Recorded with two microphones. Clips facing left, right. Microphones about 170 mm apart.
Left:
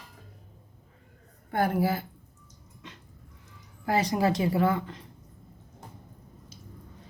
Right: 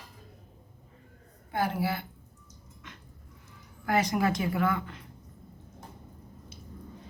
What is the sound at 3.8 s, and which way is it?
Speech, 30° left (ahead or behind).